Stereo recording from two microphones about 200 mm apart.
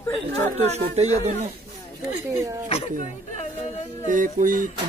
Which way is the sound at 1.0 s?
35° right (ahead or behind).